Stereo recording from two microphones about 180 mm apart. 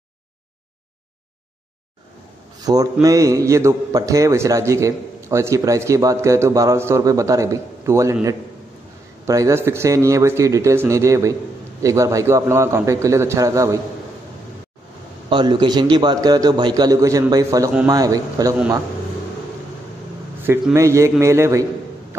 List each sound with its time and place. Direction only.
2.6 s a man's voice: 20° right (ahead or behind)
15.2 s a man's voice: 25° right (ahead or behind)
20.7 s a man's voice: 15° right (ahead or behind)